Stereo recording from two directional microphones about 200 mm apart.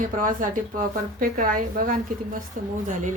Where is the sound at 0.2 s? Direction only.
40° right (ahead or behind).